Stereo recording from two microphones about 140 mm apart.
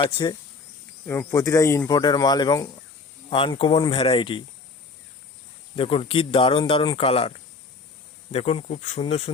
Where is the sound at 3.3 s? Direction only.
40° left (ahead or behind).